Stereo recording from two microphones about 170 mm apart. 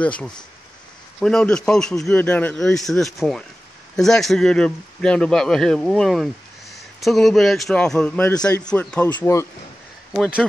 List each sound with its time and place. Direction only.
0.0 s a man's voice: 5° left (ahead or behind)
10.1 s a man's voice: centre (ahead or behind)